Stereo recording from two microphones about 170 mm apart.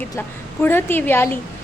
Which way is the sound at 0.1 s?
15° left (ahead or behind).